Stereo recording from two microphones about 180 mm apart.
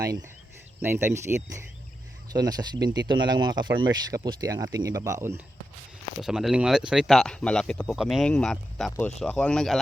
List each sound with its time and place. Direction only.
0.8 s speech: 15° right (ahead or behind)
6.1 s speech: centre (ahead or behind)